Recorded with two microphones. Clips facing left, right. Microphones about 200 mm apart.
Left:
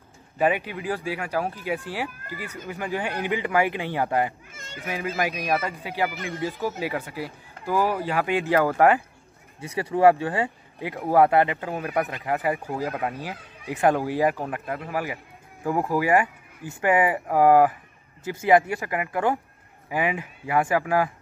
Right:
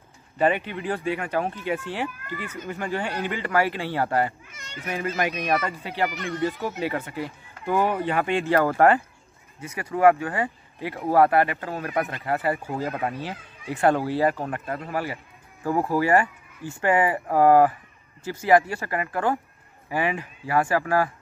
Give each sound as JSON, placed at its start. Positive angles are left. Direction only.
{"t": 0.4, "sound": "speech", "side_deg": 10}
{"t": 5.0, "sound": "speech", "side_deg": 0}
{"t": 9.6, "sound": "speech", "side_deg": 30}